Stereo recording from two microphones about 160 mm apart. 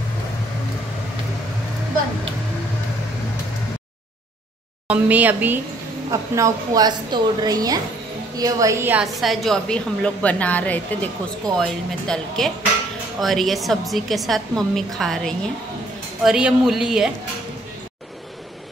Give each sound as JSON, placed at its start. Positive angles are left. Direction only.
{"t": 4.8, "sound": "a woman's voice", "side_deg": -10}
{"t": 9.0, "sound": "a woman's voice", "side_deg": 0}